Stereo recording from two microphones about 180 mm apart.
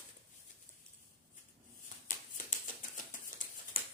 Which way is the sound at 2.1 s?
45° left (ahead or behind).